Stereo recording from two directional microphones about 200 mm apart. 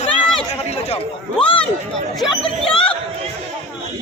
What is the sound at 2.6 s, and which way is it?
Speech, 25° left (ahead or behind).